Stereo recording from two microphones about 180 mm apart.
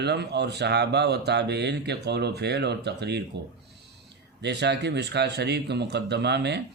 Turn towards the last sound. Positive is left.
turn(degrees=-70)  # may be behind; listen again after turning